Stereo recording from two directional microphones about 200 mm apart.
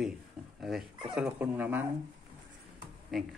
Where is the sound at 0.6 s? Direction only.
Centre (ahead or behind).